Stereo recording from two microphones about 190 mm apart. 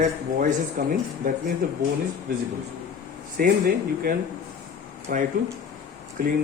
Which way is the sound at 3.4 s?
50° right (ahead or behind).